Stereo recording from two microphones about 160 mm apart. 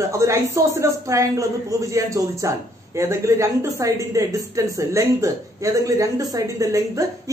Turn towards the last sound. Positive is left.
turn(degrees=-20)  # may be behind; listen again after turning